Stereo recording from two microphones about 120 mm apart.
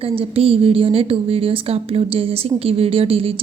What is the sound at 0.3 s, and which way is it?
A woman's voice, 50° right (ahead or behind).